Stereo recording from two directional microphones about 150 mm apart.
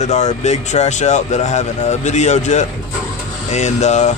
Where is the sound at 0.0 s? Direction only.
50° left (ahead or behind).